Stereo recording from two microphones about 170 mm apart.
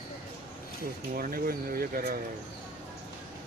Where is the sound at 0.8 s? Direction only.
60° right (ahead or behind).